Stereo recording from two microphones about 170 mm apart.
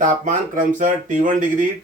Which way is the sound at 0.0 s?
50° right (ahead or behind).